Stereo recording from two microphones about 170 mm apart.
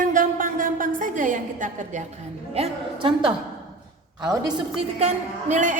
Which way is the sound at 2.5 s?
35° right (ahead or behind).